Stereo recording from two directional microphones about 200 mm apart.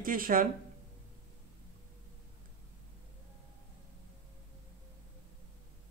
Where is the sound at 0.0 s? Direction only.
45° right (ahead or behind).